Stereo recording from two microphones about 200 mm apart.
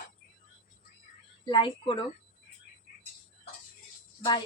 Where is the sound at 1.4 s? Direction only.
25° left (ahead or behind).